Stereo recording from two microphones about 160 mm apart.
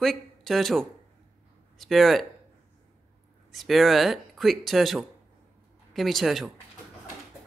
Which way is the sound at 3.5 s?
Centre (ahead or behind).